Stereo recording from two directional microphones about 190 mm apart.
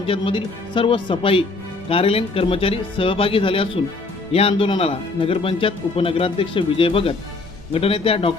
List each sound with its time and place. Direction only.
0.0 s speech: 30° left (ahead or behind)